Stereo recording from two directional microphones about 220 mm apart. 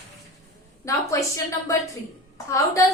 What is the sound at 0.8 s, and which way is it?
A woman's voice, 15° left (ahead or behind).